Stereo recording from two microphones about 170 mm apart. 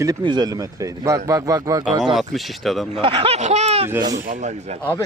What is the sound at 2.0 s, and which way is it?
Speech, centre (ahead or behind).